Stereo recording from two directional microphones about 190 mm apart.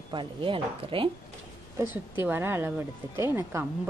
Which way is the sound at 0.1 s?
25° right (ahead or behind).